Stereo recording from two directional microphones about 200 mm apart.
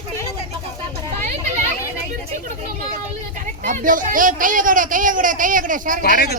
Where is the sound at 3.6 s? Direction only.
40° right (ahead or behind).